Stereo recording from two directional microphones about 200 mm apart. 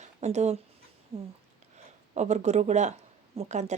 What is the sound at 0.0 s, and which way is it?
Speech, 35° right (ahead or behind).